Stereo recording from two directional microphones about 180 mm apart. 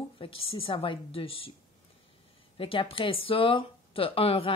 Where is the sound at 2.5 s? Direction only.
30° left (ahead or behind).